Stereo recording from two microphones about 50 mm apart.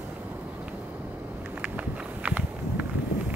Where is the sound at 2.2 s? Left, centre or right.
Right.